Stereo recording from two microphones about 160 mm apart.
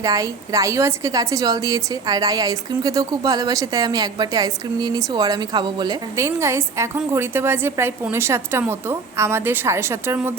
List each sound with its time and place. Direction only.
0.0 s a woman's voice: 20° right (ahead or behind)